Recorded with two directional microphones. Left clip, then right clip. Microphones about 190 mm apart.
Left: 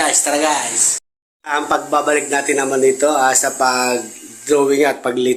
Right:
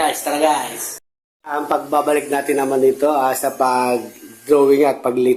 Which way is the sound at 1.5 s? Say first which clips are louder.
Left 2 dB; 10° right (ahead or behind).